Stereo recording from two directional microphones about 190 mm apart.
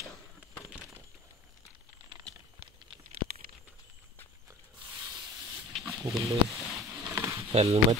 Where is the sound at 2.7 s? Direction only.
25° right (ahead or behind).